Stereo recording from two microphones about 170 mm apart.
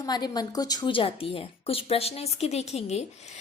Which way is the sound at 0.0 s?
25° left (ahead or behind).